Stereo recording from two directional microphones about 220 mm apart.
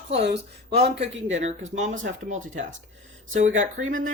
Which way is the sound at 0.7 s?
30° right (ahead or behind).